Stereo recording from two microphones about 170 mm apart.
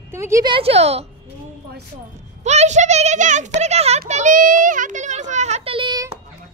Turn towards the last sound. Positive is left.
turn(degrees=-30)  # may be behind; listen again after turning